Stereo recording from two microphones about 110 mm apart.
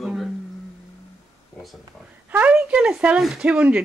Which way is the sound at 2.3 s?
10° right (ahead or behind).